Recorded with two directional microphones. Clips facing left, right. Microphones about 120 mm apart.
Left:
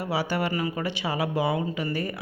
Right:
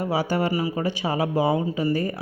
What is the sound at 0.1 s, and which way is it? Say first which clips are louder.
Speech: right 2 dB; 45° right (ahead or behind).